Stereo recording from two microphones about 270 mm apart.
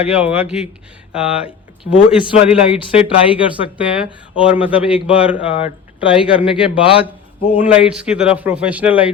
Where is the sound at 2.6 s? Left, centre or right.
Left.